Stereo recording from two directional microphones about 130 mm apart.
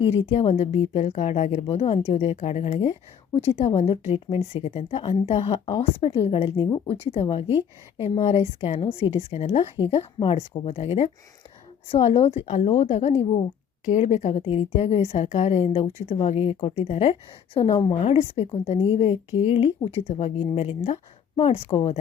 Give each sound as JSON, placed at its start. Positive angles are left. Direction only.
{"t": 0.2, "sound": "a woman's voice", "side_deg": 50}
{"t": 1.6, "sound": "a woman's voice", "side_deg": 50}
{"t": 12.5, "sound": "a woman's voice", "side_deg": 60}